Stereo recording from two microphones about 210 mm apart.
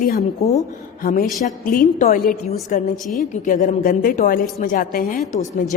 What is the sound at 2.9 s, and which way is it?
Speech, centre (ahead or behind).